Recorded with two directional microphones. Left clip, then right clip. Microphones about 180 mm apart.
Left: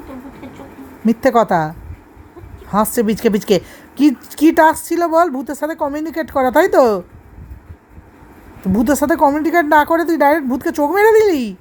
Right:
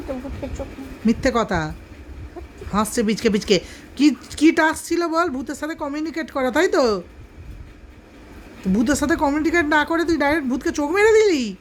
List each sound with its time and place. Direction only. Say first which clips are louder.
0.4 s a sound: right 4 dB; 15° right (ahead or behind)
1.0 s a woman's voice: left 7 dB; 10° left (ahead or behind)
8.6 s speech: left 5 dB; 15° left (ahead or behind)